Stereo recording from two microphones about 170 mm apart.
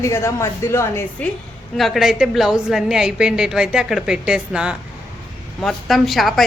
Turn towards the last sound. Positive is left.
turn(degrees=0)  # may be behind; listen again after turning